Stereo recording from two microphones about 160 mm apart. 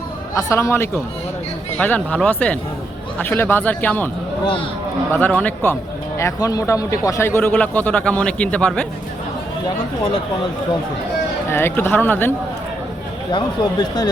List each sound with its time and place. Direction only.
0.3 s speech: 20° left (ahead or behind)
5.1 s speech: 10° left (ahead or behind)
6.1 s speech: 20° left (ahead or behind)
11.5 s speech: 15° left (ahead or behind)
13.3 s speech: 25° left (ahead or behind)